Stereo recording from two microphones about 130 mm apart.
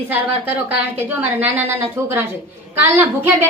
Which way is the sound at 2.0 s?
20° right (ahead or behind).